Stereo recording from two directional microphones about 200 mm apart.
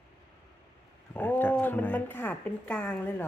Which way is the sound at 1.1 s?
10° left (ahead or behind).